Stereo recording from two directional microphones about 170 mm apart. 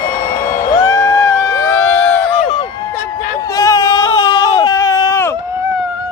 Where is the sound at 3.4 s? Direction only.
20° left (ahead or behind).